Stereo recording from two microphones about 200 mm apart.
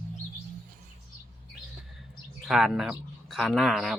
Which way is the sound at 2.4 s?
Centre (ahead or behind).